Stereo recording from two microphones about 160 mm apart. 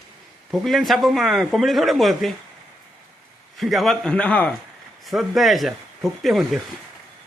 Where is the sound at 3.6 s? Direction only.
Centre (ahead or behind).